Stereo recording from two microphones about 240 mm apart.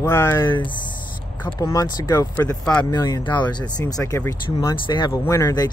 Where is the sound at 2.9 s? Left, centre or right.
Centre.